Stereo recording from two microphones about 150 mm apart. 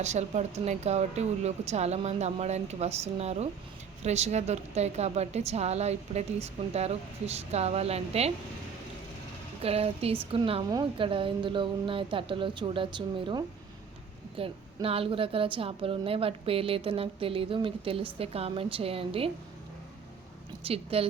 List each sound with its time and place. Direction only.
0.0 s a woman's voice: 50° right (ahead or behind)
9.6 s a woman's voice: 40° right (ahead or behind)
20.7 s a woman's voice: 40° right (ahead or behind)